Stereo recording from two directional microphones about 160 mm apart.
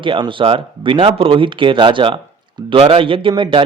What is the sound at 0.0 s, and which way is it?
Speech, 30° right (ahead or behind).